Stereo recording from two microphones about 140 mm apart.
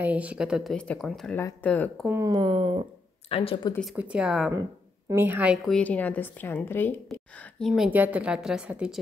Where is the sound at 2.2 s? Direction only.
30° right (ahead or behind).